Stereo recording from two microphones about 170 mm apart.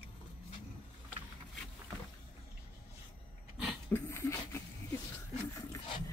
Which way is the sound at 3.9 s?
15° left (ahead or behind).